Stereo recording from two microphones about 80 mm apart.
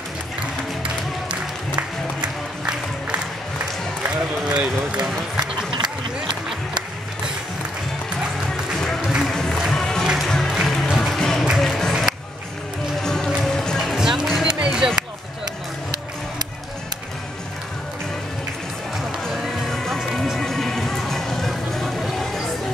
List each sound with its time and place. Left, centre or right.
1.3 s music: centre
4.5 s speech: centre
5.4 s a sound: right
9.0 s music: centre
9.3 s music: centre
11.6 s a sound: centre
13.0 s music: centre
14.6 s a sound: centre
18.9 s music: centre